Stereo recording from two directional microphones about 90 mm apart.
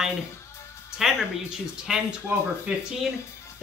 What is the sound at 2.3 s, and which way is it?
Speech, 20° right (ahead or behind).